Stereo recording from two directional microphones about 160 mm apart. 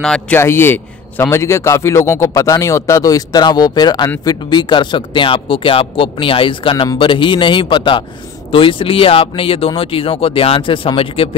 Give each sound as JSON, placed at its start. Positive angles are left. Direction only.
{"t": 0.0, "sound": "a man's voice", "side_deg": 5}